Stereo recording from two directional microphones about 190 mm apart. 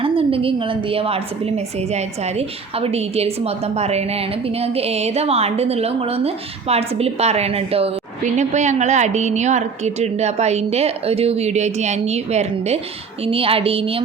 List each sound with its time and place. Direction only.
0.0 s a woman's voice: 30° right (ahead or behind)